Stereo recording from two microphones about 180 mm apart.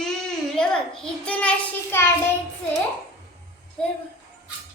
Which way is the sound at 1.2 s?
5° left (ahead or behind).